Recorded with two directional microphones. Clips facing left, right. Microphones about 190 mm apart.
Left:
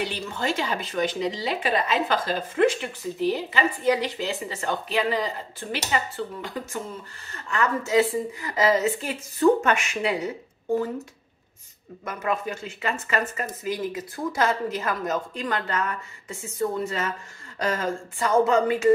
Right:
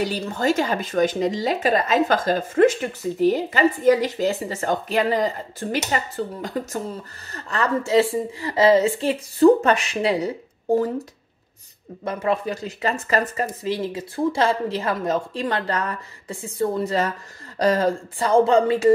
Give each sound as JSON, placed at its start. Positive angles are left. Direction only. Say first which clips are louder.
{"t": 0.0, "sound": "speech", "louder": "right 6 dB", "side_deg": -40}
{"t": 12.0, "sound": "speech", "louder": "right 5 dB", "side_deg": -30}